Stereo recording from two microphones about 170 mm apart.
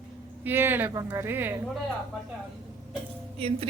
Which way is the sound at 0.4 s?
10° right (ahead or behind).